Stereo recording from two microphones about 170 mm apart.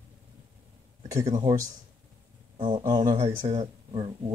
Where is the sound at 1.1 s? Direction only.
20° right (ahead or behind).